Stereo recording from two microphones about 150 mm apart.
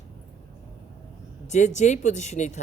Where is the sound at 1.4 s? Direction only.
50° left (ahead or behind).